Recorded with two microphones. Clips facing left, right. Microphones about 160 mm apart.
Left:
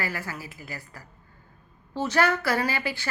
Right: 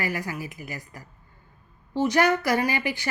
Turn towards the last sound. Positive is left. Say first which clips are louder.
# right 2 dB
turn(degrees=-15)  # may be behind; listen again after turning